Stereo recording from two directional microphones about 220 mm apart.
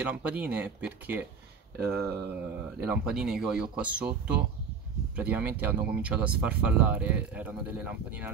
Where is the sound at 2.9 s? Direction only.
5° right (ahead or behind).